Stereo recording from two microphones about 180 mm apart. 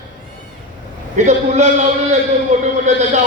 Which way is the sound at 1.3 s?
40° right (ahead or behind).